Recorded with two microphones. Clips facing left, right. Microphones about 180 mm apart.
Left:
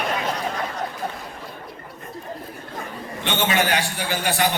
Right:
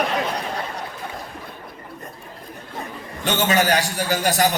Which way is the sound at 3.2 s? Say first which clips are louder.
Right 3 dB; 40° right (ahead or behind).